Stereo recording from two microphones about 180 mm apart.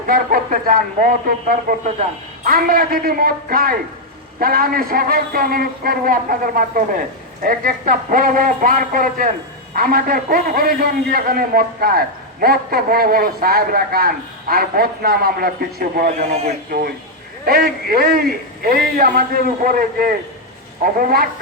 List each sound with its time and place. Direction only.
0.1 s a man's voice: 50° right (ahead or behind)
17.4 s a man's voice: 55° right (ahead or behind)